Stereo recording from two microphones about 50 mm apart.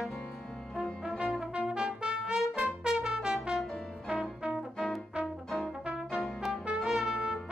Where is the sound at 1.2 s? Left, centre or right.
Centre.